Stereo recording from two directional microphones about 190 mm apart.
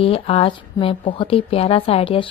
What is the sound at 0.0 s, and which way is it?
Speech, 30° left (ahead or behind).